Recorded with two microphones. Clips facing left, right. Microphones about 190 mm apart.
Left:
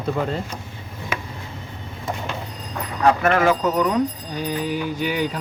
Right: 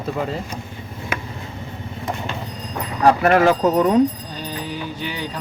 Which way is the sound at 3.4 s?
35° right (ahead or behind).